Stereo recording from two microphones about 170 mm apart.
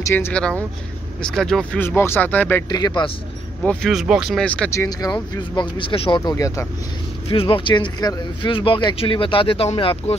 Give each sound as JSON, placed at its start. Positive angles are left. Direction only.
{"t": 0.0, "sound": "speech", "side_deg": 15}
{"t": 2.7, "sound": "speech", "side_deg": 25}
{"t": 3.6, "sound": "speech", "side_deg": 0}
{"t": 4.7, "sound": "speech", "side_deg": 20}
{"t": 7.2, "sound": "speech", "side_deg": 30}